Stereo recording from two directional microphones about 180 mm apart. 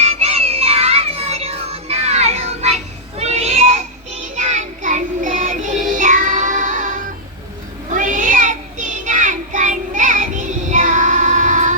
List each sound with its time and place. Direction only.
0.0 s music: 35° right (ahead or behind)
7.9 s child singing: 45° right (ahead or behind)